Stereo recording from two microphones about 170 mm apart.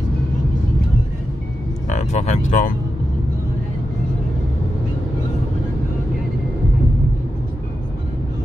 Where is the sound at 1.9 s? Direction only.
40° left (ahead or behind).